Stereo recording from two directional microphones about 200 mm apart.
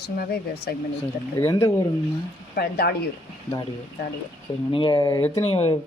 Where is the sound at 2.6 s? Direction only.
50° left (ahead or behind).